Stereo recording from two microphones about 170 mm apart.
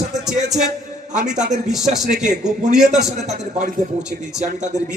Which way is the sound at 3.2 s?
40° right (ahead or behind).